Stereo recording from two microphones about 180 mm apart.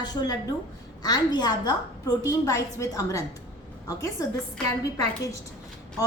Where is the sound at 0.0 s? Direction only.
20° left (ahead or behind).